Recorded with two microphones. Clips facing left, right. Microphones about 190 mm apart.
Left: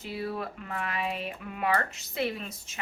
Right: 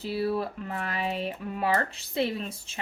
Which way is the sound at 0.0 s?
30° right (ahead or behind).